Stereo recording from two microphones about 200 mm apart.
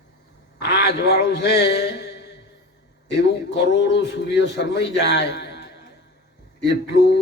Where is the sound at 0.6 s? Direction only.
55° left (ahead or behind).